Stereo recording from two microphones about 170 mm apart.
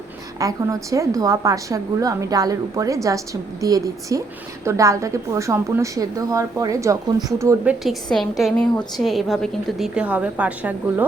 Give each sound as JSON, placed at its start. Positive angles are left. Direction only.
{"t": 0.3, "sound": "a woman's voice", "side_deg": -20}